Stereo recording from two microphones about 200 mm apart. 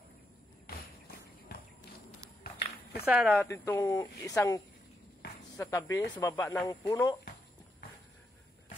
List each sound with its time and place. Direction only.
1.5 s a sound: 50° left (ahead or behind)
3.1 s speech: 5° right (ahead or behind)
3.4 s speech: 15° left (ahead or behind)
5.6 s speech: 15° left (ahead or behind)